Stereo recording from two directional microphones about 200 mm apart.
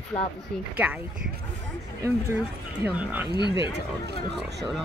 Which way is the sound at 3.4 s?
60° right (ahead or behind).